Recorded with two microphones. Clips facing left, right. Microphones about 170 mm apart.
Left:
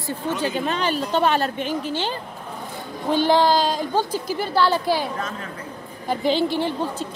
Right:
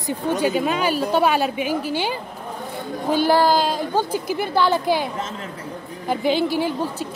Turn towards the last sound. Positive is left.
turn(degrees=-10)  # may be behind; listen again after turning